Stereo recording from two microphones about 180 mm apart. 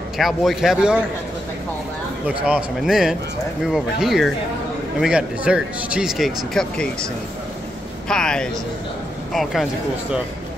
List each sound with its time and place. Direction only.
0.2 s speech: centre (ahead or behind)
2.4 s speech: 5° right (ahead or behind)
8.1 s a man's voice: 5° left (ahead or behind)